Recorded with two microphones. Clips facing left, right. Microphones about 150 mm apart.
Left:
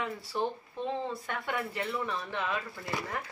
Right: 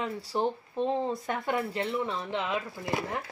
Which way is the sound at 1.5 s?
25° right (ahead or behind).